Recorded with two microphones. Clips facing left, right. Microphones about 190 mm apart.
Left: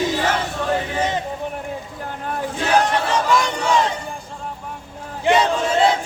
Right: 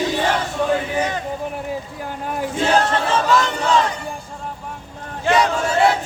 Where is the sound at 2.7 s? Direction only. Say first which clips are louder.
Left 3 dB; 15° left (ahead or behind).